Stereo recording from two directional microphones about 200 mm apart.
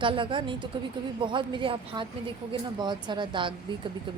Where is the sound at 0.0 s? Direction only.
25° right (ahead or behind).